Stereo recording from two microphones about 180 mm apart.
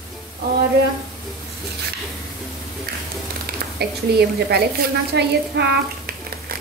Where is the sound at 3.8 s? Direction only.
65° right (ahead or behind).